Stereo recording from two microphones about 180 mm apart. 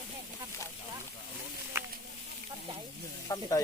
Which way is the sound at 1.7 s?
15° right (ahead or behind).